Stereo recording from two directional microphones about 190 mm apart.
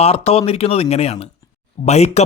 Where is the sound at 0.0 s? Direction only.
30° left (ahead or behind).